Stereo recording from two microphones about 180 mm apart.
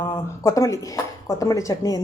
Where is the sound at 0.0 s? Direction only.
15° left (ahead or behind).